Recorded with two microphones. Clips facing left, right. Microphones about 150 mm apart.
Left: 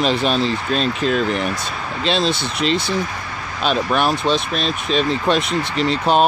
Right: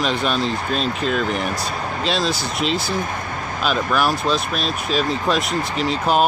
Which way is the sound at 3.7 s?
30° left (ahead or behind).